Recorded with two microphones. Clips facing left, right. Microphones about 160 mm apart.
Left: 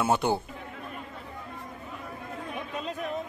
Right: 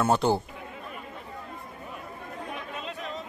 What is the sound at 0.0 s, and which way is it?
Speech, 5° left (ahead or behind).